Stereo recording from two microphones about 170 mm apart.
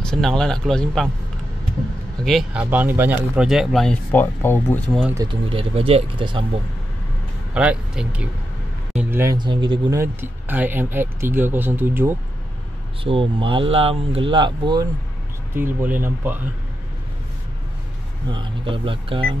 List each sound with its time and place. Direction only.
0.0 s speech: 5° left (ahead or behind)
2.2 s speech: centre (ahead or behind)
2.6 s speech: 10° right (ahead or behind); by 5.0 s 10° left (ahead or behind)
5.1 s speech: 20° right (ahead or behind)
5.5 s speech: 35° right (ahead or behind)
7.5 s speech: 5° right (ahead or behind)
9.4 s speech: 30° right (ahead or behind)
9.9 s speech: 10° right (ahead or behind)
13.0 s speech: 30° right (ahead or behind)
15.5 s speech: 10° right (ahead or behind)
18.3 s speech: 30° right (ahead or behind)